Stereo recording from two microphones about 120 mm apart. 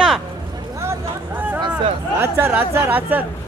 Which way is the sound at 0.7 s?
25° right (ahead or behind).